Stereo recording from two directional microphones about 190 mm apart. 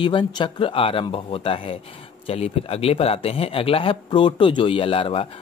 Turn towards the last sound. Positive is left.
turn(degrees=30)  # may be behind; listen again after turning